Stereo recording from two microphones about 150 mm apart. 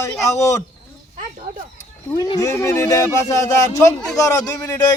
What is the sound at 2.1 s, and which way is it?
Speech, 25° left (ahead or behind).